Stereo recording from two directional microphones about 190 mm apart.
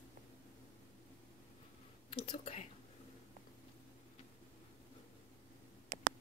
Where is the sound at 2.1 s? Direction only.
30° left (ahead or behind).